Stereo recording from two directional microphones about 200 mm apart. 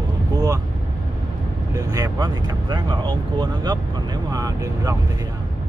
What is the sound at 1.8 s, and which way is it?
Speech, 20° right (ahead or behind).